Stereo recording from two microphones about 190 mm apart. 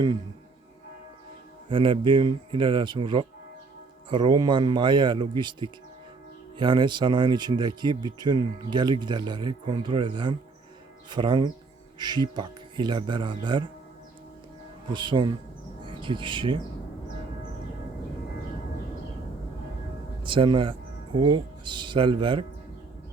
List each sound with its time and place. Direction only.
1.7 s speech: 25° right (ahead or behind)
14.9 s speech: 25° right (ahead or behind)
20.2 s speech: 25° right (ahead or behind)